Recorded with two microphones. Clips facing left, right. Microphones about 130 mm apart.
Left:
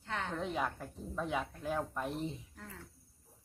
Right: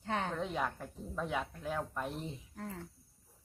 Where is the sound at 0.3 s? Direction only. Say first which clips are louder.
Even; centre (ahead or behind).